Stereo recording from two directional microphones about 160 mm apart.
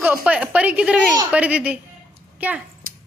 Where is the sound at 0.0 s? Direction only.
10° right (ahead or behind).